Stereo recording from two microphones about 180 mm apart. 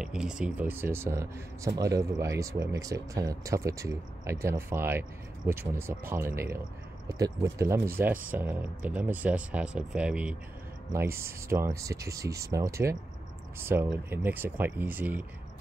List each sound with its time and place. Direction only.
0.0 s speech: 5° right (ahead or behind)